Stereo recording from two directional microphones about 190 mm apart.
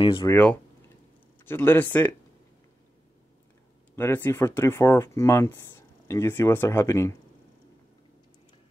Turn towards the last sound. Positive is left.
turn(degrees=15)  # may be behind; listen again after turning